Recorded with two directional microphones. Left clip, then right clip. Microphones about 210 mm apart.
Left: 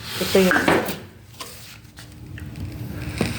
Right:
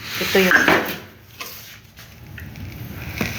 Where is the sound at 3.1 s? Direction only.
50° left (ahead or behind).